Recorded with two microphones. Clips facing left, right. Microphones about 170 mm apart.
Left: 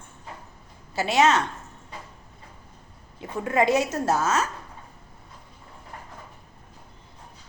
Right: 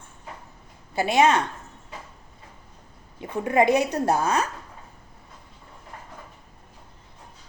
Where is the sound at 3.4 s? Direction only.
15° right (ahead or behind).